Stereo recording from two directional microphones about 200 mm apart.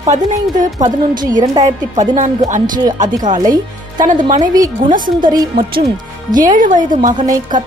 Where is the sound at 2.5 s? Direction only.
40° right (ahead or behind).